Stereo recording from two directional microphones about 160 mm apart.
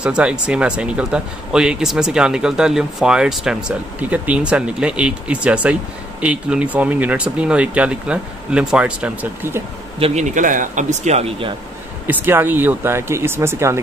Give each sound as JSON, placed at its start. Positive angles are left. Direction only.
{"t": 0.0, "sound": "speech", "side_deg": -5}
{"t": 9.9, "sound": "a man's voice", "side_deg": -40}
{"t": 12.1, "sound": "speech", "side_deg": -10}